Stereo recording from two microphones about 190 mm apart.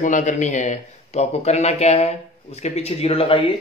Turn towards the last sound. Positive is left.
turn(degrees=30)  # may be behind; listen again after turning